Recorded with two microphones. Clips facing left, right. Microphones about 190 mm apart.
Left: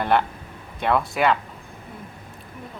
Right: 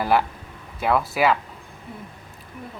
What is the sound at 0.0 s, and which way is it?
Speech, 5° right (ahead or behind).